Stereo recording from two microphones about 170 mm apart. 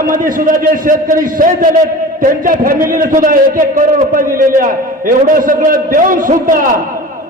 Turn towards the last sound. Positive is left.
turn(degrees=-55)  # may be behind; listen again after turning